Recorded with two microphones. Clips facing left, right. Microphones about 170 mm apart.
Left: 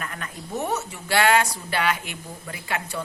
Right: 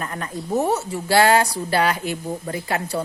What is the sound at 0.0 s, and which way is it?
A woman's voice, 35° right (ahead or behind).